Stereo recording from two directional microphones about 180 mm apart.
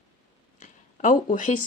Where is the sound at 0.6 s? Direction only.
45° left (ahead or behind).